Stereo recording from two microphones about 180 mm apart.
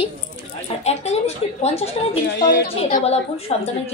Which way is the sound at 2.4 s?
70° left (ahead or behind).